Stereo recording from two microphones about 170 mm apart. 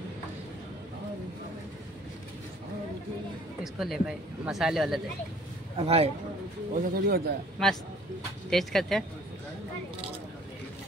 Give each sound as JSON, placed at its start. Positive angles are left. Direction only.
{"t": 3.6, "sound": "speech", "side_deg": 0}
{"t": 5.8, "sound": "a man's voice", "side_deg": -35}
{"t": 6.7, "sound": "speech", "side_deg": -60}
{"t": 8.5, "sound": "speech", "side_deg": 0}